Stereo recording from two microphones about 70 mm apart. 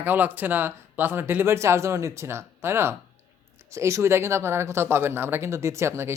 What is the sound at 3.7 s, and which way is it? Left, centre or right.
Speech, right.